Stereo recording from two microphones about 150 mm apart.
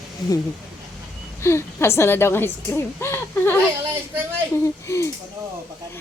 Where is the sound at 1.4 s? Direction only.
15° left (ahead or behind).